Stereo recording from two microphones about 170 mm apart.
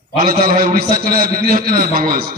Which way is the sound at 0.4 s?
60° right (ahead or behind).